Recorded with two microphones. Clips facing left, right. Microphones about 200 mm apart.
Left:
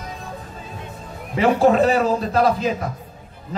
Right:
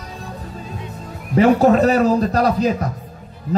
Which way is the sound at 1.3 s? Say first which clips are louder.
Right 3 dB; 40° right (ahead or behind).